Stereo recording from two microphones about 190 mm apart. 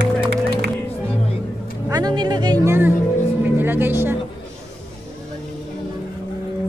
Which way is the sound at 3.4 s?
10° right (ahead or behind).